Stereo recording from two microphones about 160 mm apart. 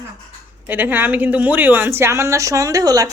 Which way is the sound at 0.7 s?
10° right (ahead or behind).